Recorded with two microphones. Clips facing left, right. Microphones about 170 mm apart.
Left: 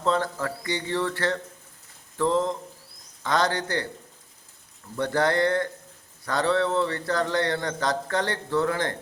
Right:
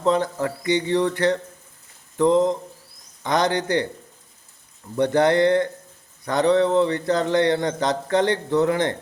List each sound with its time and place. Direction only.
0.0 s a man's voice: 20° right (ahead or behind)
4.9 s a man's voice: 20° right (ahead or behind)